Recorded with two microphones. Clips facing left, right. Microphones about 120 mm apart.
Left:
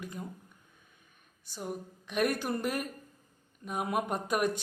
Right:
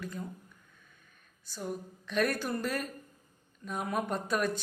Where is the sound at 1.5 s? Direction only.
15° left (ahead or behind).